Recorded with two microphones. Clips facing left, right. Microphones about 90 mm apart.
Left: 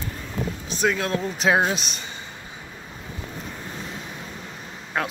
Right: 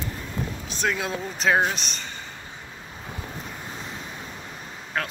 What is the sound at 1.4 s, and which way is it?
Speech, 10° left (ahead or behind).